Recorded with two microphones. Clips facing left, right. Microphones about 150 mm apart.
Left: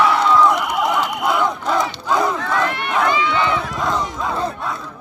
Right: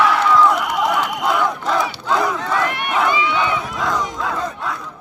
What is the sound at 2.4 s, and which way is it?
Run, 15° right (ahead or behind).